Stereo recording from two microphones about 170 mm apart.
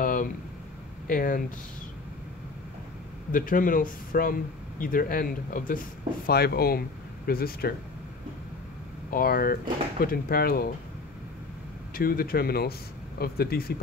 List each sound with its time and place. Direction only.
0.0 s a sound: 55° left (ahead or behind)
1.0 s speech: 55° left (ahead or behind)
3.3 s speech: 55° left (ahead or behind)
6.2 s speech: 70° left (ahead or behind)
9.1 s speech: 60° left (ahead or behind)
11.9 s speech: 60° left (ahead or behind)